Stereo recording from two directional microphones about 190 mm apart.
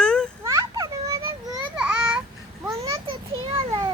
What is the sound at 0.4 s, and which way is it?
Children playing, 20° right (ahead or behind).